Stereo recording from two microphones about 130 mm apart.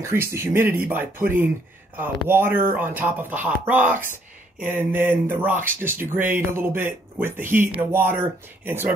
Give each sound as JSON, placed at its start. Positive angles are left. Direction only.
{"t": 0.0, "sound": "speech", "side_deg": -20}